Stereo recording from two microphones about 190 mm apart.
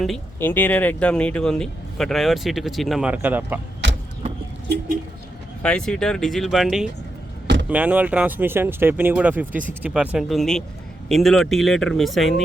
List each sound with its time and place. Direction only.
0.3 s speech: 10° left (ahead or behind); by 3.6 s 10° right (ahead or behind)
3.8 s vehicle: 70° right (ahead or behind)
5.6 s speech: 5° left (ahead or behind)